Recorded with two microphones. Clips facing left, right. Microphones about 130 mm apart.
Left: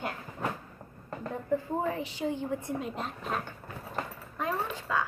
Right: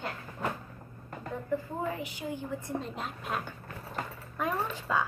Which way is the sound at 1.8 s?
30° left (ahead or behind).